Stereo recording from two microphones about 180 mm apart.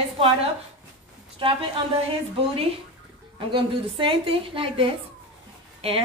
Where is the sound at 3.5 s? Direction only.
25° right (ahead or behind).